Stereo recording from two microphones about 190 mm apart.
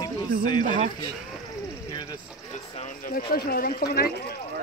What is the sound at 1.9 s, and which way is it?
Speech, 20° left (ahead or behind).